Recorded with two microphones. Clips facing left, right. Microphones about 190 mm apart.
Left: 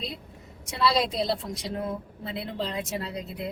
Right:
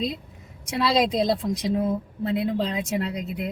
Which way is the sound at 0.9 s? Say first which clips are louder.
Right 5 dB; 20° right (ahead or behind).